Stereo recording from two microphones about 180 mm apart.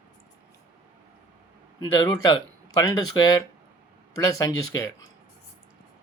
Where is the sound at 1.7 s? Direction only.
20° left (ahead or behind).